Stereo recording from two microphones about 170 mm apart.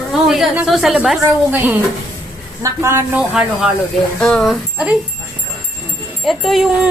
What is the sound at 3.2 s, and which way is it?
A woman's voice, 5° right (ahead or behind).